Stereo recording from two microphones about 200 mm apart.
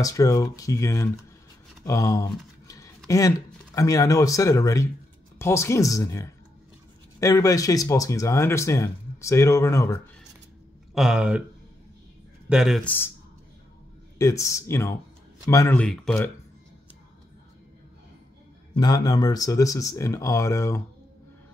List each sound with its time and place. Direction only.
0.0 s speech: 15° left (ahead or behind)
11.0 s speech: 5° right (ahead or behind)
12.4 s speech: centre (ahead or behind)
14.1 s speech: 15° left (ahead or behind)
18.8 s speech: 20° left (ahead or behind)